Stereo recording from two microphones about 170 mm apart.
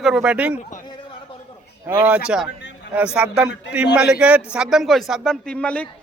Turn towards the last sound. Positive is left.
turn(degrees=10)  # may be behind; listen again after turning